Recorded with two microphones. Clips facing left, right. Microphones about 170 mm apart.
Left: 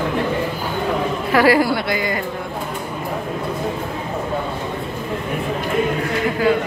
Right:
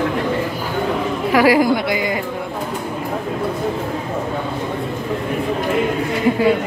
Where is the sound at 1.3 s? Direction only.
10° right (ahead or behind).